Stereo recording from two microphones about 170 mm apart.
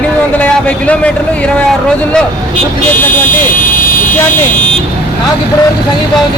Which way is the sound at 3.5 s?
55° left (ahead or behind).